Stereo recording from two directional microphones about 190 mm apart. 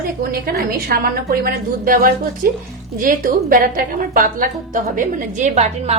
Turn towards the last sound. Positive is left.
turn(degrees=-35)  # may be behind; listen again after turning